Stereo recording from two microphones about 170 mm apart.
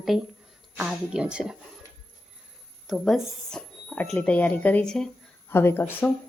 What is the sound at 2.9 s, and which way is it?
Speech, centre (ahead or behind).